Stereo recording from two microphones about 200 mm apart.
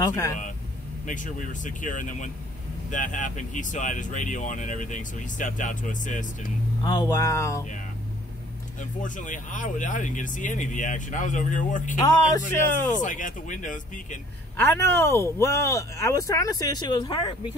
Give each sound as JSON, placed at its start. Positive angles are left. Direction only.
{"t": 0.0, "sound": "speech", "side_deg": 15}
{"t": 1.0, "sound": "speech", "side_deg": 40}
{"t": 6.8, "sound": "speech", "side_deg": 20}
{"t": 9.0, "sound": "speech", "side_deg": 40}
{"t": 12.0, "sound": "speech", "side_deg": 20}
{"t": 12.9, "sound": "speech", "side_deg": 40}
{"t": 14.6, "sound": "speech", "side_deg": 10}